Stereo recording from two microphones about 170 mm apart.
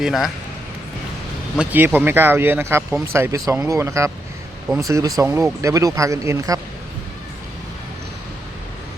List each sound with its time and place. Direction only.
0.0 s speech: centre (ahead or behind)
1.5 s speech: 10° right (ahead or behind)